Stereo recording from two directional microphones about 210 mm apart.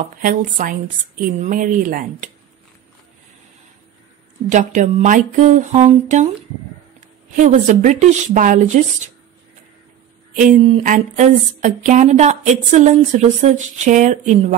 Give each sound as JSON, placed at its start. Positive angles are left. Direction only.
{"t": 0.0, "sound": "speech", "side_deg": -40}
{"t": 4.5, "sound": "speech", "side_deg": -35}
{"t": 7.3, "sound": "speech", "side_deg": -35}
{"t": 10.3, "sound": "speech", "side_deg": -35}